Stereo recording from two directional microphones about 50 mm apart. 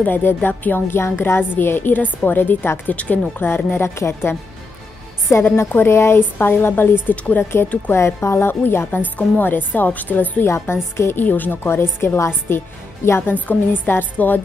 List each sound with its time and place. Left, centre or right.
0.0 s a woman's voice: left
3.4 s a woman's voice: left
5.4 s a woman's voice: left
7.9 s speech: left
8.5 s a woman's voice: left
10.4 s a woman's voice: left
11.1 s a woman's voice: left
11.7 s a woman's voice: left
12.3 s a woman's voice: left
13.5 s a woman's voice: left